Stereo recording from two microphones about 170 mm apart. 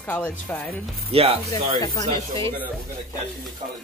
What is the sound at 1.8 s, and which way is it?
Speech, 20° left (ahead or behind).